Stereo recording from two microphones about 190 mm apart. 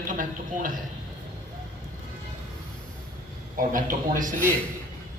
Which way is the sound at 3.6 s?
45° right (ahead or behind).